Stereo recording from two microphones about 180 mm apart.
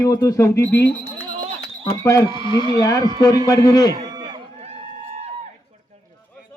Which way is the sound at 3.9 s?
20° right (ahead or behind).